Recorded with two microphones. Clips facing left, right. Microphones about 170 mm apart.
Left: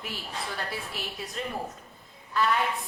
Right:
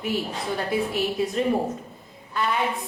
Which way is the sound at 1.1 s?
Centre (ahead or behind).